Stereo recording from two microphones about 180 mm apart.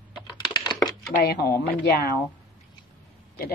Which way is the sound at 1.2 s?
60° left (ahead or behind).